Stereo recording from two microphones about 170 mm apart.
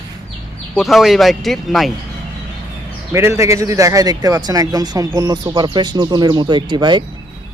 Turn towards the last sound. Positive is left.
turn(degrees=-25)  # may be behind; listen again after turning